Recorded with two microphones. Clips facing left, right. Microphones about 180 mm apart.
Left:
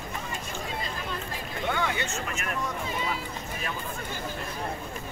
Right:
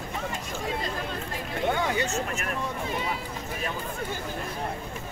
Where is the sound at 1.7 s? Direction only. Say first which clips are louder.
Right 2 dB; 40° right (ahead or behind).